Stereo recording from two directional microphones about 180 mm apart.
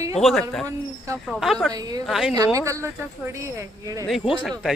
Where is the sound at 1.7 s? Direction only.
20° right (ahead or behind).